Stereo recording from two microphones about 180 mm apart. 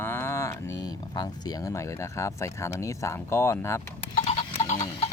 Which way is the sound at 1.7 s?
15° left (ahead or behind).